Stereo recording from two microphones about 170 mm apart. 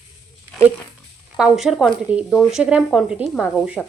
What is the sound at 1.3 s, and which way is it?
Speech, centre (ahead or behind).